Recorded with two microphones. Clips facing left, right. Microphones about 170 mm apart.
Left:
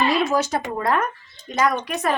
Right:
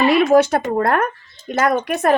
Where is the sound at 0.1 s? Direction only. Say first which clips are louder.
Right 8 dB; 60° right (ahead or behind).